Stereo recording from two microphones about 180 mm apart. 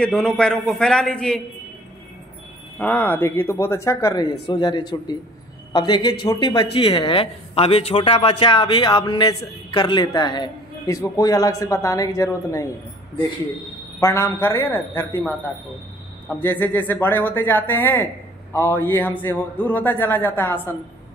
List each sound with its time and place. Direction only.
0.0 s a man's voice: 5° left (ahead or behind)
2.8 s a man's voice: 10° left (ahead or behind)
13.9 s a man's voice: 15° left (ahead or behind)
16.3 s a man's voice: 10° left (ahead or behind)